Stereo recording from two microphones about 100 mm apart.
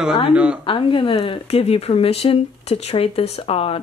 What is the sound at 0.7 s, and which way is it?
Speech, 60° left (ahead or behind).